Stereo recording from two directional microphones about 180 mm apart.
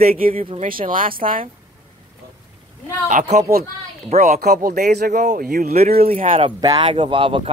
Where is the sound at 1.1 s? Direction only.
50° right (ahead or behind).